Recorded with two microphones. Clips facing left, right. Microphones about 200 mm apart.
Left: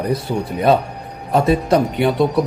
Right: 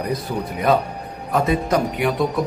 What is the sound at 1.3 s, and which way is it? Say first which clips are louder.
Speech: left 4 dB; 30° left (ahead or behind).